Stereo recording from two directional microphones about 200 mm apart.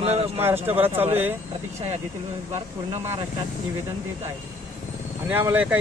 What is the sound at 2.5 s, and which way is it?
Speech, 15° right (ahead or behind).